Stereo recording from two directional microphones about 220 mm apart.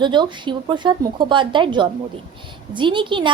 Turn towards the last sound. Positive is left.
turn(degrees=-20)  # may be behind; listen again after turning